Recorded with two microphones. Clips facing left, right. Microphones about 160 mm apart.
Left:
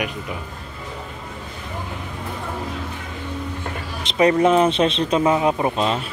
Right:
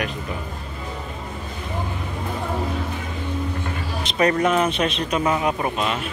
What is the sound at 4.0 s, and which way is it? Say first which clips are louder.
Speech: left 4 dB; 20° left (ahead or behind).